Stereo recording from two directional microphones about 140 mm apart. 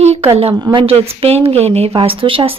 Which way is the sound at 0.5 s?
30° right (ahead or behind).